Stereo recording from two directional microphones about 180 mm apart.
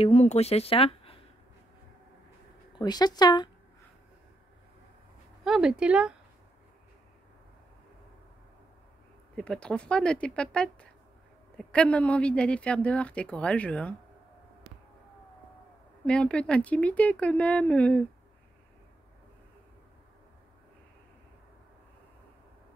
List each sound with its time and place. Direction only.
0.0 s speech: 35° left (ahead or behind)
2.8 s speech: 20° left (ahead or behind)
5.4 s speech: 5° right (ahead or behind)
9.3 s a woman's voice: 5° left (ahead or behind)
16.1 s a woman's voice: 5° left (ahead or behind)